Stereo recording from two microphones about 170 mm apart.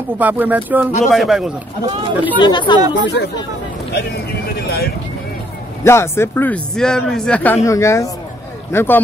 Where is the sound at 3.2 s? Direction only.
90° left.